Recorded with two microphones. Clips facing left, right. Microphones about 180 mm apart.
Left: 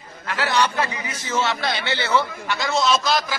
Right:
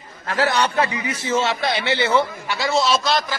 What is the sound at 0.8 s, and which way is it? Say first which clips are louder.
Speech: right 4 dB; 20° right (ahead or behind).